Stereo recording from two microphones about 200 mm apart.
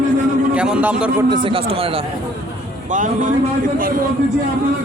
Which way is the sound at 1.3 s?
25° right (ahead or behind).